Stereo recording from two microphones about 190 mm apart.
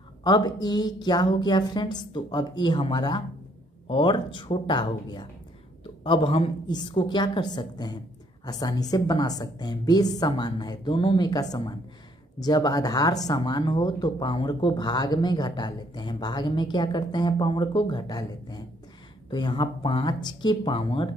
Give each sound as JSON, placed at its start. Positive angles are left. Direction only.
{"t": 0.2, "sound": "speech", "side_deg": 20}